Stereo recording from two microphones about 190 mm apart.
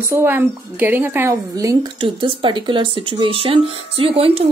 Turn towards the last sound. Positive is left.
turn(degrees=-30)  # may be behind; listen again after turning